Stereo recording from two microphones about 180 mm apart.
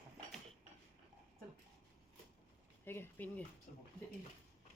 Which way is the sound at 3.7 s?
50° left (ahead or behind).